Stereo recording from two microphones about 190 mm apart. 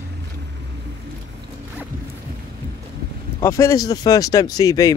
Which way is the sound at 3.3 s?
15° left (ahead or behind).